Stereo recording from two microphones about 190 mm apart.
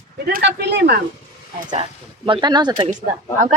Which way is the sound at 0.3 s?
60° right (ahead or behind).